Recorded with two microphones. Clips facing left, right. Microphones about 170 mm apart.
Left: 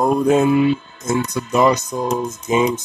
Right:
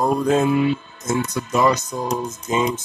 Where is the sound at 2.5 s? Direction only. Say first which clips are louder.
Left 4 dB; 15° left (ahead or behind).